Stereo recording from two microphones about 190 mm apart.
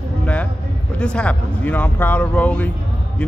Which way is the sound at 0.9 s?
5° left (ahead or behind).